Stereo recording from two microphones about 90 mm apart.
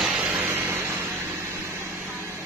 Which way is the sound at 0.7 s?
25° right (ahead or behind).